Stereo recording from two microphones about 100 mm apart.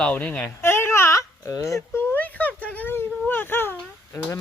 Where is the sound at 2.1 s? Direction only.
15° left (ahead or behind).